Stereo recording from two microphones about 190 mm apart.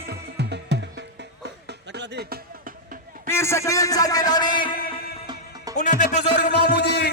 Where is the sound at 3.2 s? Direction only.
15° left (ahead or behind).